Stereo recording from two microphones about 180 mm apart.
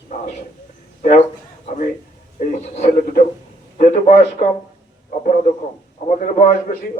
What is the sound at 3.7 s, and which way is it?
Speech, 45° left (ahead or behind).